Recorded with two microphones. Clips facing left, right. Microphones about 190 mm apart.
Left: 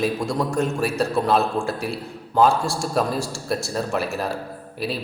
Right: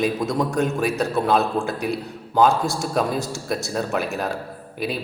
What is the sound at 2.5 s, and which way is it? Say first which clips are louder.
Speech: right 1 dB; 20° right (ahead or behind).